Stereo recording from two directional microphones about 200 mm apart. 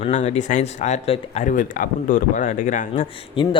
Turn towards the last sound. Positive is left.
turn(degrees=25)  # may be behind; listen again after turning